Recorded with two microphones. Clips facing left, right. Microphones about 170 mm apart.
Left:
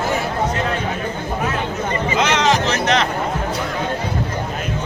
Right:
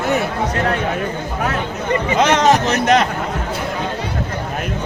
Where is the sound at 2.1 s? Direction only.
50° right (ahead or behind).